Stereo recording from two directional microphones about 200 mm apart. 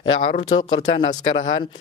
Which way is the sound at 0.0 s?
30° left (ahead or behind).